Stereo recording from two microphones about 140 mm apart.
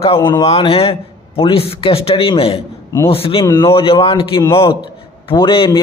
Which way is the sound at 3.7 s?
40° left (ahead or behind).